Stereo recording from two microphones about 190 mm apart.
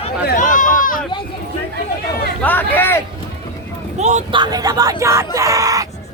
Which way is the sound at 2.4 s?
10° left (ahead or behind).